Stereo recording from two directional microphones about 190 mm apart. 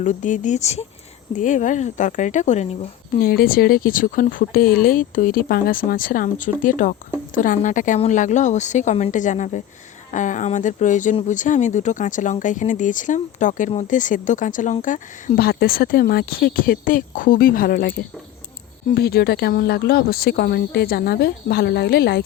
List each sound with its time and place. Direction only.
0.0 s speech: 40° left (ahead or behind)
3.2 s speech: 55° left (ahead or behind)